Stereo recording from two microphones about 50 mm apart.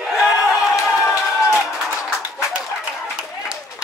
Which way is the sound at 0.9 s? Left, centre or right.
Centre.